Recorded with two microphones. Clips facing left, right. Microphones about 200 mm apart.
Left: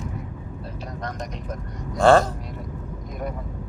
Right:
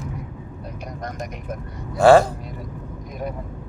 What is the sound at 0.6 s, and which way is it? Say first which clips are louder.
Vehicle: right 1 dB; 15° right (ahead or behind).